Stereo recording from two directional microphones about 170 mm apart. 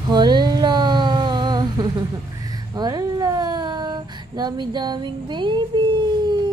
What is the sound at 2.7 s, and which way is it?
Speech, 20° right (ahead or behind).